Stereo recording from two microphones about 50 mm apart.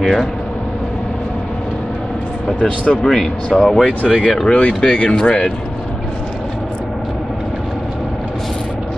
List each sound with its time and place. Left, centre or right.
0.0 s speech: centre
2.8 s speech: left
4.5 s speech: left